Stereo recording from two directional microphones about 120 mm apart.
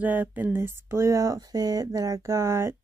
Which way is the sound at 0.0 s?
15° right (ahead or behind).